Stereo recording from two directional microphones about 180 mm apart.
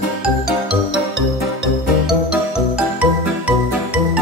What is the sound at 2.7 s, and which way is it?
Music, 5° right (ahead or behind).